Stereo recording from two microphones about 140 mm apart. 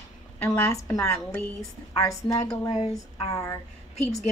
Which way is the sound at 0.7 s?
25° left (ahead or behind).